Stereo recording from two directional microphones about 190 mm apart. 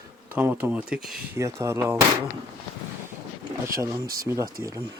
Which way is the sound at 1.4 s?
15° right (ahead or behind).